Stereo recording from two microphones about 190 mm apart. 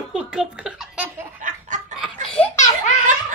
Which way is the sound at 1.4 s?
40° right (ahead or behind).